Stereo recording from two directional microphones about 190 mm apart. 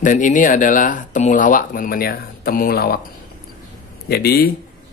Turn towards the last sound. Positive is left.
turn(degrees=55)  # may be behind; listen again after turning